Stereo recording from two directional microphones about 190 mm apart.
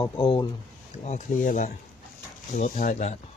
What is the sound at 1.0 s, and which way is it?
Speech, 40° left (ahead or behind).